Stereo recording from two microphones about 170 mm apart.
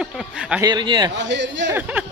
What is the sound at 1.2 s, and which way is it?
Speech, 90° right.